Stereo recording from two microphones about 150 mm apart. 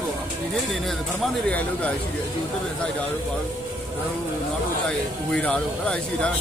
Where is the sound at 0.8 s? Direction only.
5° left (ahead or behind).